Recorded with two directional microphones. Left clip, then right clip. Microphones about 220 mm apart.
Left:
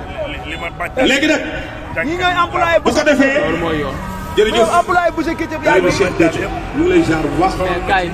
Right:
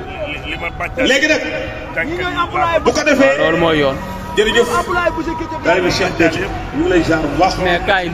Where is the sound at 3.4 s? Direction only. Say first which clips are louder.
Right 5 dB; 50° right (ahead or behind).